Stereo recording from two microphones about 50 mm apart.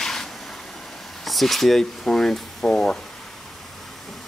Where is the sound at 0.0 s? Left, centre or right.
Centre.